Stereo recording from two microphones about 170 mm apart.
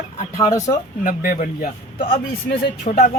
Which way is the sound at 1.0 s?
55° left (ahead or behind).